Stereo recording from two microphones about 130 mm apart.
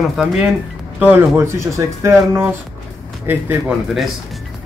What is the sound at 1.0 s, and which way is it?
Speech, 15° right (ahead or behind).